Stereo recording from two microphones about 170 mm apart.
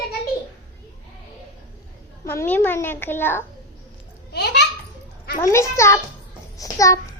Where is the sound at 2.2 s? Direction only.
15° left (ahead or behind).